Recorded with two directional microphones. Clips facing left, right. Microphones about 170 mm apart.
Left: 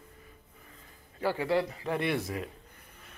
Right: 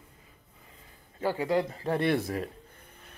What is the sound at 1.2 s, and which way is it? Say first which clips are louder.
Speech: right 1 dB; 15° right (ahead or behind).